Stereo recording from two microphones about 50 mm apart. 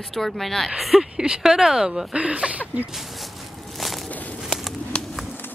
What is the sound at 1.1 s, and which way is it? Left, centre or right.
Speech, centre.